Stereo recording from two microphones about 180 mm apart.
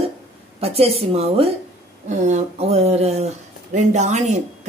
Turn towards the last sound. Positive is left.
turn(degrees=-40)  # may be behind; listen again after turning